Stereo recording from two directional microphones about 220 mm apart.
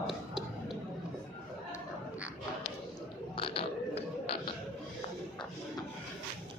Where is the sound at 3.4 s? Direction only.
25° left (ahead or behind).